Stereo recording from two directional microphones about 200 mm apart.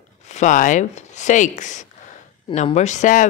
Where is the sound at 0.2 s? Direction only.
35° left (ahead or behind).